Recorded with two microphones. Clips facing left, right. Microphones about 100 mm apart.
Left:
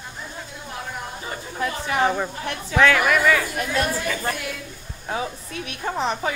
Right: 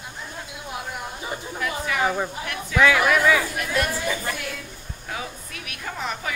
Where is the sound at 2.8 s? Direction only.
5° right (ahead or behind).